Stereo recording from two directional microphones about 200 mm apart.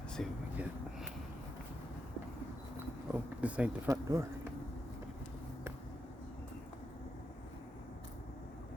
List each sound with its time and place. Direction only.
0.2 s speech: 5° left (ahead or behind)
3.1 s a sound: 5° right (ahead or behind)
3.8 s speech: 15° right (ahead or behind)